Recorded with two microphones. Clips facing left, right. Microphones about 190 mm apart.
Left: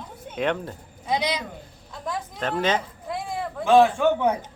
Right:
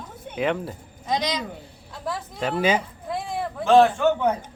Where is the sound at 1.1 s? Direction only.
10° left (ahead or behind).